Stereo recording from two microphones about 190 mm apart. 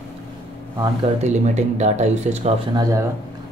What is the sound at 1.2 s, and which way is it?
Speech, 35° right (ahead or behind).